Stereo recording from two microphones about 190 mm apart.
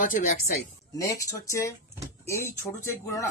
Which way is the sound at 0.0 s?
45° left (ahead or behind).